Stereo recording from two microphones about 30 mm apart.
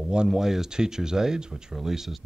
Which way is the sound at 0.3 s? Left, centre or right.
Centre.